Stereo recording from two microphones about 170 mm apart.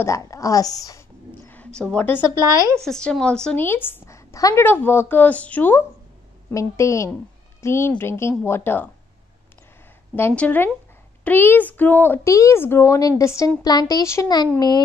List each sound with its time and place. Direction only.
0.0 s a woman's voice: 20° left (ahead or behind)
2.8 s a woman's voice: 5° left (ahead or behind)
10.1 s a woman's voice: 10° left (ahead or behind)